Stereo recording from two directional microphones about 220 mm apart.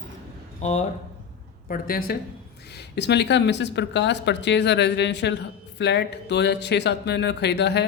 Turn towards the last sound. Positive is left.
turn(degrees=50)  # may be behind; listen again after turning